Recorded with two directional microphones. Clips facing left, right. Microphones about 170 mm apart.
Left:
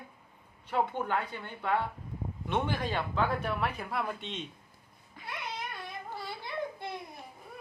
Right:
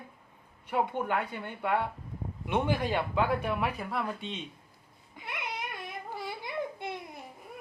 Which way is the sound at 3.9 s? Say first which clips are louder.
Right 1 dB; centre (ahead or behind).